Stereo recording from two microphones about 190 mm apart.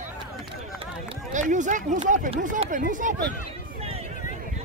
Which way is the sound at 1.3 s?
40° right (ahead or behind).